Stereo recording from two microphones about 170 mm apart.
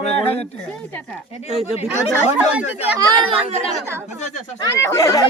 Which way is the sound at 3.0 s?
30° right (ahead or behind).